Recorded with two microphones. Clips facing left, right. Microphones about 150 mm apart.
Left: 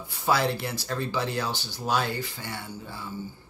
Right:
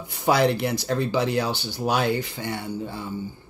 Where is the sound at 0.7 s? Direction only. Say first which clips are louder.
Right 6 dB; 15° right (ahead or behind).